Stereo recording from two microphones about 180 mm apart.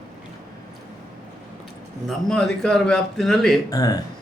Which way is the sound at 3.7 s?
20° left (ahead or behind).